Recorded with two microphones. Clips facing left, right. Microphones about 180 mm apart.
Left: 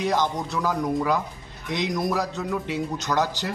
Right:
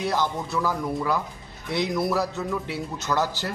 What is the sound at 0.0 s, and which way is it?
A man's voice, 15° left (ahead or behind).